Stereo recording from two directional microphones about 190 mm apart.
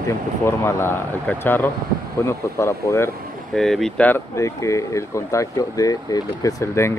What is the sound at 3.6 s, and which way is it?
Speech, centre (ahead or behind).